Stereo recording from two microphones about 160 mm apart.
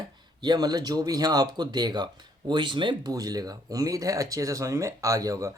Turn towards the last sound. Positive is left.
turn(degrees=-20)  # may be behind; listen again after turning